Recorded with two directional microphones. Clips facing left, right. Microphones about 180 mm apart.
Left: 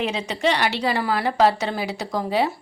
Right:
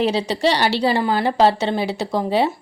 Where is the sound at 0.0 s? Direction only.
35° right (ahead or behind).